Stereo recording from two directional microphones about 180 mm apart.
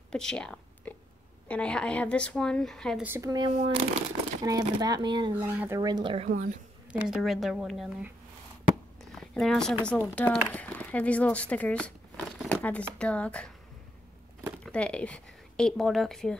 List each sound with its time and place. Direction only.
0.1 s a sound: 5° left (ahead or behind)
1.5 s a woman's voice: 5° left (ahead or behind)
3.0 s speech: 15° right (ahead or behind)
6.2 s a woman's voice: 45° right (ahead or behind)
6.9 s a woman's voice: 5° right (ahead or behind)
9.1 s a sound: 5° left (ahead or behind)
9.8 s speech: 5° left (ahead or behind)
14.6 s speech: 5° left (ahead or behind)